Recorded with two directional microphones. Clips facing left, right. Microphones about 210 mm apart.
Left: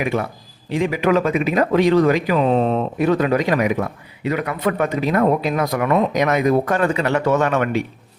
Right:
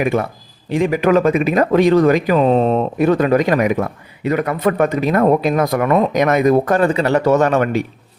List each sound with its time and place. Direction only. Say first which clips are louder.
0.7 s speech: right 3 dB; 45° right (ahead or behind)